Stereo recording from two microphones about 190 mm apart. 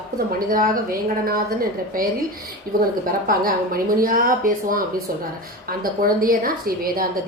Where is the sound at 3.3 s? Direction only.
50° right (ahead or behind).